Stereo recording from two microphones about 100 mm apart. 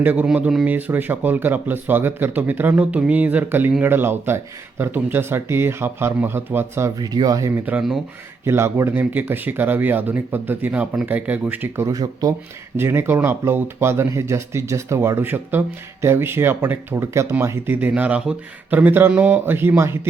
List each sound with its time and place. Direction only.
0.0 s speech: 15° right (ahead or behind)
7.0 s speech: 40° right (ahead or behind)
7.5 s speech: 15° right (ahead or behind)
11.9 s speech: 35° right (ahead or behind)
12.7 s speech: 25° right (ahead or behind)